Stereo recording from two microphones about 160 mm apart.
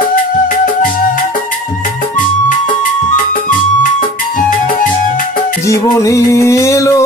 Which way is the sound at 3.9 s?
55° left (ahead or behind).